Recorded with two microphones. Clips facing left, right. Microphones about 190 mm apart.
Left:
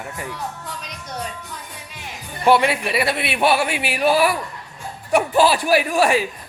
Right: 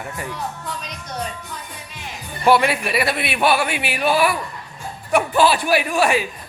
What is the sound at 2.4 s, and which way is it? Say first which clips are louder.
Speech: even; 20° left (ahead or behind).